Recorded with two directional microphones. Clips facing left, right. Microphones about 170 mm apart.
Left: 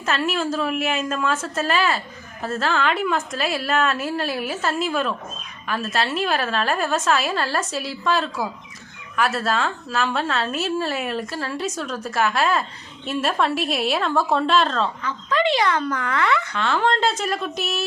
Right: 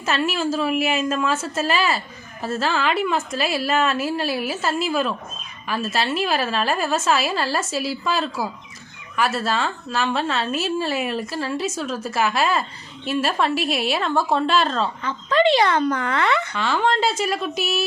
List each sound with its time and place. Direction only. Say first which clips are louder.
0.0 s a woman's voice: right 1 dB; centre (ahead or behind)
15.0 s speech: right 7 dB; 30° right (ahead or behind)
16.5 s a woman's voice: even; centre (ahead or behind)